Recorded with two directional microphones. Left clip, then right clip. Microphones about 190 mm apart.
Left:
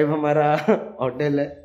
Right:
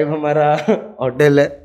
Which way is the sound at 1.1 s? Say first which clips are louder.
Right 13 dB; 45° right (ahead or behind).